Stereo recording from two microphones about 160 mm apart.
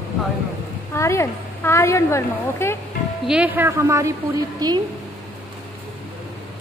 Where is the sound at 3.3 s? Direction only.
10° right (ahead or behind).